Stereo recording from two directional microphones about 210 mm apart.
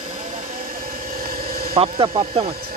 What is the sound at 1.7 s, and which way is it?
Speech, 25° right (ahead or behind).